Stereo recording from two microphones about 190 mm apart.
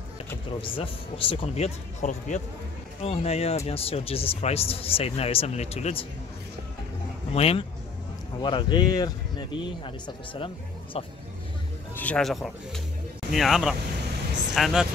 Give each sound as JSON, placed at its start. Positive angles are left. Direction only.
{"t": 0.6, "sound": "a man's voice", "side_deg": 30}
{"t": 7.3, "sound": "a man's voice", "side_deg": 30}
{"t": 11.9, "sound": "speech", "side_deg": 10}